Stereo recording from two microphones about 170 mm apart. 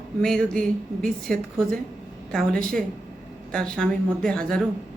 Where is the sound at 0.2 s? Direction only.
5° left (ahead or behind).